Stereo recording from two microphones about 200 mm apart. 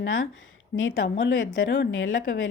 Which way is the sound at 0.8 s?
75° left (ahead or behind).